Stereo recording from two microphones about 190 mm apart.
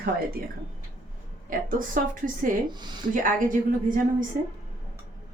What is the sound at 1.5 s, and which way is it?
Speech, 45° right (ahead or behind).